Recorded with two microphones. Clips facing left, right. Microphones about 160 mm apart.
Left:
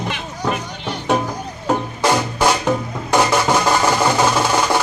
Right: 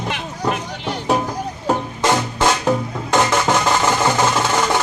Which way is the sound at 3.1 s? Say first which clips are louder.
Left 1 dB; 20° right (ahead or behind).